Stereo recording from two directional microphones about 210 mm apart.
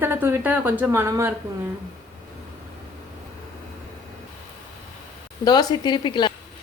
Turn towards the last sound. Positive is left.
turn(degrees=20)  # may be behind; listen again after turning